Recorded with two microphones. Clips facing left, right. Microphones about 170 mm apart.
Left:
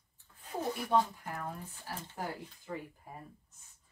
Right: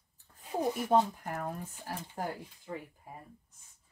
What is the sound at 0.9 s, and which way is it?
Speech, 40° right (ahead or behind).